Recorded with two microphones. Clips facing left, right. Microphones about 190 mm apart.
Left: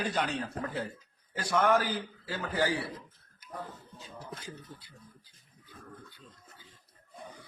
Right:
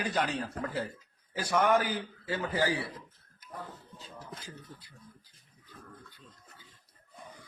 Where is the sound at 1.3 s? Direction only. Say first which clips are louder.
Even; 15° right (ahead or behind).